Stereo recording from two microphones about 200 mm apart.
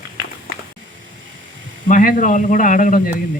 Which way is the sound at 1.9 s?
40° left (ahead or behind).